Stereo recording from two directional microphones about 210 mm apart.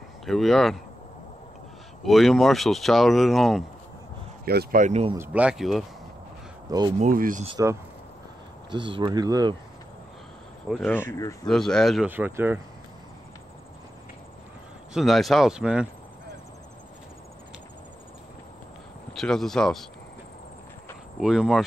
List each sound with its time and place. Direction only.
0.3 s speech: centre (ahead or behind)
2.0 s speech: centre (ahead or behind)
4.5 s speech: 45° right (ahead or behind)
5.1 s speech: 10° right (ahead or behind)
7.0 s speech: 40° right (ahead or behind)
7.4 s speech: 20° right (ahead or behind)
10.7 s speech: 5° left (ahead or behind); by 12.5 s 10° right (ahead or behind)
15.0 s speech: centre (ahead or behind)
19.1 s speech: centre (ahead or behind)
21.2 s speech: centre (ahead or behind)